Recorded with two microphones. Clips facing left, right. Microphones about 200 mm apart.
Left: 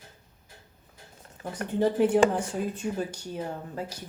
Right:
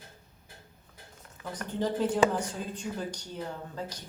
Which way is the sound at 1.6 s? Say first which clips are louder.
Left 6 dB; 25° left (ahead or behind).